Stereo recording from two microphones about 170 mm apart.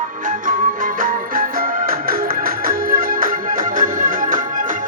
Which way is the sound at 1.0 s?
55° right (ahead or behind).